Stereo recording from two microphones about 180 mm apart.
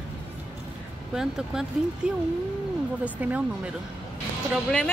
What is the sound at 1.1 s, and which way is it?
Speech, 5° right (ahead or behind).